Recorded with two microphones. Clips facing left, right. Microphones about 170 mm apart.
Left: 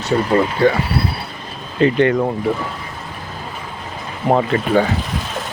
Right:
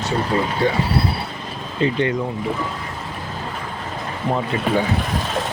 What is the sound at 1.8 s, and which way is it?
Speech, 65° left (ahead or behind).